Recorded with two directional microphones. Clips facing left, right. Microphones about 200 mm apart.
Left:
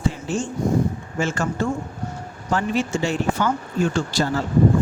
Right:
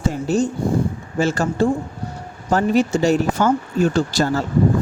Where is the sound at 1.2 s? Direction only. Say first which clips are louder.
Right 5 dB; 35° right (ahead or behind).